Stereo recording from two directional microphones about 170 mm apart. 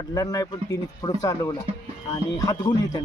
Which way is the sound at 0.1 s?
20° left (ahead or behind).